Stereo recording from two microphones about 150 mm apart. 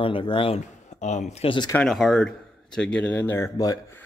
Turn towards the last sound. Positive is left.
turn(degrees=25)  # may be behind; listen again after turning